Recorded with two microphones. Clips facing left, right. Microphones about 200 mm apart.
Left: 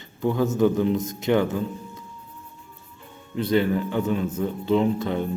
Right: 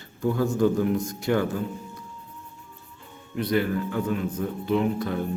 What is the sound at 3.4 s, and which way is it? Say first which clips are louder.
Speech: left 3 dB; 25° left (ahead or behind).